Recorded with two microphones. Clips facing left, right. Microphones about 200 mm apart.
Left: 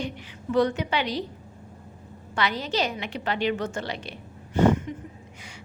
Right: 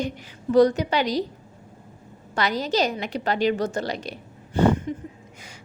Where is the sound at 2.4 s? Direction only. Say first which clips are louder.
Right 3 dB; 40° right (ahead or behind).